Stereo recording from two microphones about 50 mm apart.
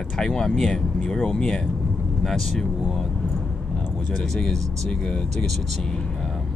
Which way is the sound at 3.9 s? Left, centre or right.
Centre.